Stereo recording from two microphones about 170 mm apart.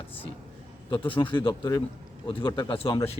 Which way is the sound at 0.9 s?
30° left (ahead or behind).